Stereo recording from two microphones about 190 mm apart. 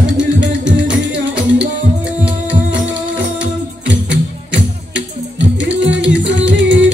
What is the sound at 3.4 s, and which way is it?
Music, 70° right (ahead or behind).